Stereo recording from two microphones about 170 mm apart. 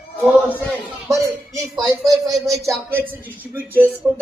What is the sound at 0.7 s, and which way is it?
A man's voice, 20° right (ahead or behind).